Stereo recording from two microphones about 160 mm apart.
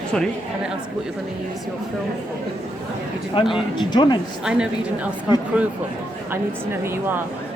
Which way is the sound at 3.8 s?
25° left (ahead or behind).